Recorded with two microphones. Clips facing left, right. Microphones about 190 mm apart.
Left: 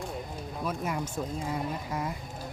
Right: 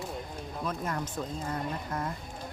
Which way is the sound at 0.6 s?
10° left (ahead or behind).